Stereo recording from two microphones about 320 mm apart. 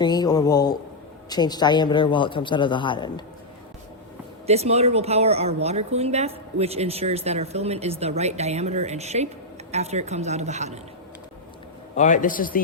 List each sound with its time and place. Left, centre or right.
0.0 s a man's voice: centre
4.4 s speech: centre
11.9 s a man's voice: left